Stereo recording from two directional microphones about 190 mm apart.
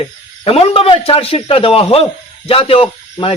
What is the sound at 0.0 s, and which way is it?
Speech, 30° left (ahead or behind).